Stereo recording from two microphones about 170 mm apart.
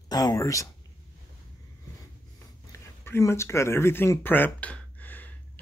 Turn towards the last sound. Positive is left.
turn(degrees=10)  # may be behind; listen again after turning